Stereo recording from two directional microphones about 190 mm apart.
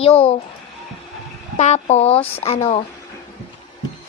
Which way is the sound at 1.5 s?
35° left (ahead or behind).